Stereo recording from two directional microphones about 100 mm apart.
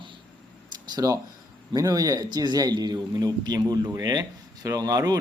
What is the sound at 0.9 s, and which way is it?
A man's voice, 35° right (ahead or behind).